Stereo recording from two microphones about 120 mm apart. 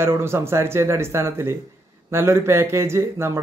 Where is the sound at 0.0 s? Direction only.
20° right (ahead or behind).